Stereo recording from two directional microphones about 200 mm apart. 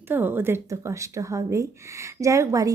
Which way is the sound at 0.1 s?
10° right (ahead or behind).